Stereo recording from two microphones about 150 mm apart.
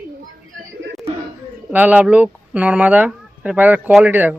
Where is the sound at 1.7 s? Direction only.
10° right (ahead or behind).